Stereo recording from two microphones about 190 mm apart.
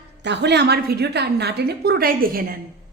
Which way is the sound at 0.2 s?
65° right (ahead or behind).